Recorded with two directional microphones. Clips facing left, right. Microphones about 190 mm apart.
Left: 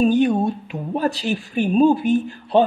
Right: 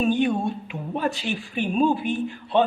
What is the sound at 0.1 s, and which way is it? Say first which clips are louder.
A woman's voice: left 5 dB; 40° left (ahead or behind).